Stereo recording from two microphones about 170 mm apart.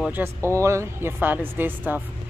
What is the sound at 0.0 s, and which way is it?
Speech, 10° right (ahead or behind).